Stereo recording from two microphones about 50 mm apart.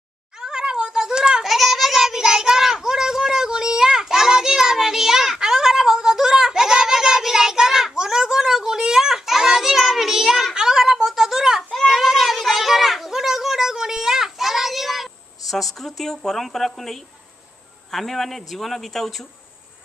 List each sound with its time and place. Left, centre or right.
0.4 s cat: centre
1.4 s child singing: centre
10.5 s a sound: centre
17.9 s a man's voice: centre